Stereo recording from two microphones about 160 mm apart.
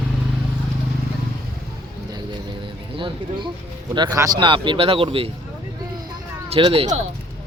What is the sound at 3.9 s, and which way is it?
Speech, 25° right (ahead or behind).